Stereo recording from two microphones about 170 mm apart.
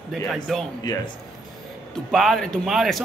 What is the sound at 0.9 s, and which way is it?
Speech, 25° left (ahead or behind).